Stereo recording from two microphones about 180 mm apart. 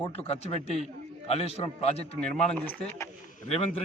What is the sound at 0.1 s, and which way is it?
A man's voice, 35° left (ahead or behind).